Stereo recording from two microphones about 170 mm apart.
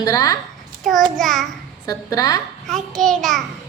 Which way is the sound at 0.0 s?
20° left (ahead or behind).